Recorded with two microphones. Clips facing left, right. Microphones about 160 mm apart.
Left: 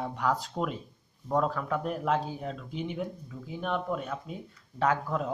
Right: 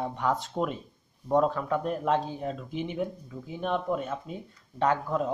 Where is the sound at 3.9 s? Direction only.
Centre (ahead or behind).